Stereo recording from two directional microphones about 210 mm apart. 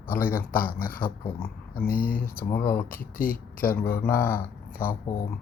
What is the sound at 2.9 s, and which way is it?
Speech, 45° left (ahead or behind).